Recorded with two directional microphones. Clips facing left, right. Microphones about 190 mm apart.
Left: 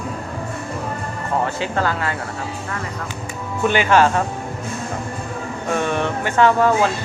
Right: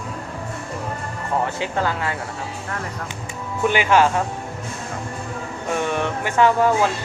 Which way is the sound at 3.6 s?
15° right (ahead or behind).